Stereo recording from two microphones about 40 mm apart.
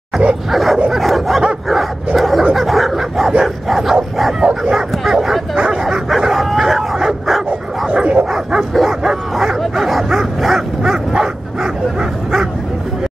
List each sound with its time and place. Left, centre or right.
0.5 s bow-wow: centre
0.9 s dog: centre
2.5 s bow-wow: centre
4.4 s speech: right
4.7 s bow-wow: centre
5.6 s bow-wow: centre
6.0 s bow-wow: centre
7.9 s dog: right
8.8 s bow-wow: centre